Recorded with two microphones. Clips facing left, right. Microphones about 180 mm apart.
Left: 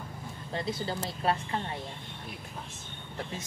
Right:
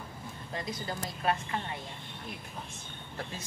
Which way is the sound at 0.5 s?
30° left (ahead or behind).